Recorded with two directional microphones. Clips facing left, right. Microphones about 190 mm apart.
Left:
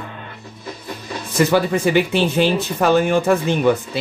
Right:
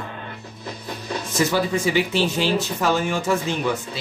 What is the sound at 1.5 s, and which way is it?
Speech, 60° left (ahead or behind).